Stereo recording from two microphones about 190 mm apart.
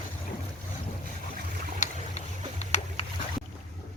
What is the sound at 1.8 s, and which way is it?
Boat, 40° left (ahead or behind).